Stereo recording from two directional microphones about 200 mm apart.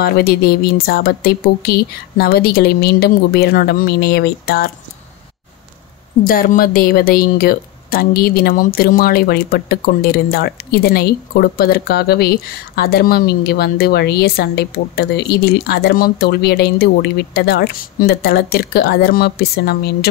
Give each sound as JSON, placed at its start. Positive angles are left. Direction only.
{"t": 0.0, "sound": "speech", "side_deg": 50}
{"t": 6.2, "sound": "speech", "side_deg": 45}